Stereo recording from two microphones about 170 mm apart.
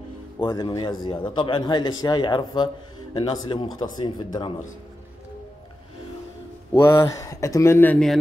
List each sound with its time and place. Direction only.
0.4 s speech: 25° left (ahead or behind)
6.7 s speech: 15° left (ahead or behind)